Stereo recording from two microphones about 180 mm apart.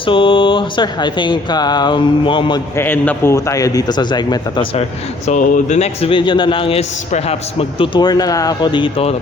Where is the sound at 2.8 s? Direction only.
10° left (ahead or behind).